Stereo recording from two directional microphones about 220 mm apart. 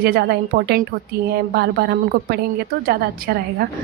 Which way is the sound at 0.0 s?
45° right (ahead or behind).